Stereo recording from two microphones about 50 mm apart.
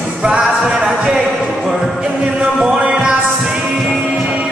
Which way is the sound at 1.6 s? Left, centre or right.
Centre.